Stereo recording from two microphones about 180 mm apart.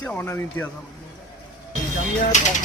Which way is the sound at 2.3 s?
40° left (ahead or behind).